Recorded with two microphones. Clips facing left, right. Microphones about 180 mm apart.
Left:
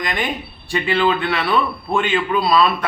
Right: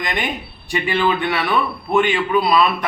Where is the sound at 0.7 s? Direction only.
15° right (ahead or behind).